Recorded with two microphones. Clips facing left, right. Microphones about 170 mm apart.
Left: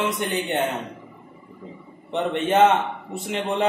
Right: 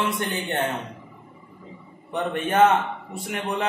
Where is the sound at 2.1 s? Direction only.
25° left (ahead or behind).